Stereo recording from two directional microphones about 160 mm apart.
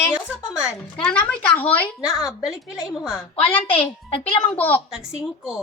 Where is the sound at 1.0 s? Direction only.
5° left (ahead or behind).